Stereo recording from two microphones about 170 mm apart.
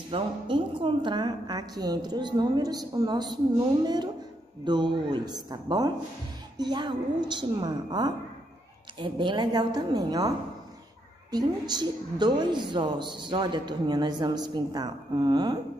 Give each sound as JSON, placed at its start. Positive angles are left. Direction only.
{"t": 0.1, "sound": "a woman's voice", "side_deg": -30}
{"t": 11.3, "sound": "a woman's voice", "side_deg": -25}